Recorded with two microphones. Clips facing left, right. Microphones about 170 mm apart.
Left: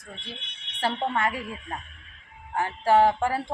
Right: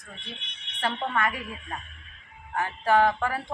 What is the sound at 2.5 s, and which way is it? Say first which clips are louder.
Speech: left 2 dB; 25° left (ahead or behind).